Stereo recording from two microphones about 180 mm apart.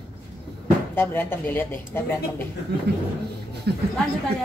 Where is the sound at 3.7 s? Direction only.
65° right (ahead or behind).